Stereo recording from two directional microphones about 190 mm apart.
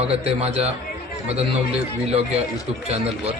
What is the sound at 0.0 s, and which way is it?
Speech, 30° right (ahead or behind).